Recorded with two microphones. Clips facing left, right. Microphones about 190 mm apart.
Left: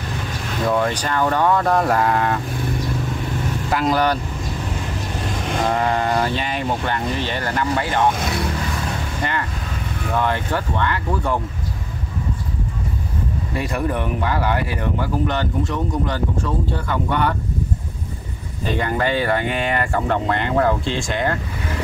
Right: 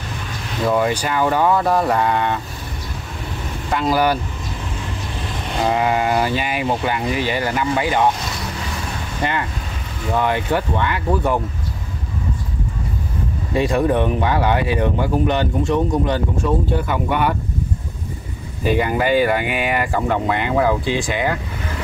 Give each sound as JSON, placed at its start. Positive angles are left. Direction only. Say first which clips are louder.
{"t": 0.7, "sound": "speech", "louder": "right 2 dB", "side_deg": -5}
{"t": 3.7, "sound": "speech", "louder": "right 1 dB", "side_deg": -5}
{"t": 5.7, "sound": "speech", "louder": "right 3 dB", "side_deg": -5}
{"t": 10.1, "sound": "speech", "louder": "right 3 dB", "side_deg": -15}
{"t": 13.5, "sound": "speech", "louder": "right 7 dB", "side_deg": -25}
{"t": 18.6, "sound": "speech", "louder": "right 3 dB", "side_deg": -10}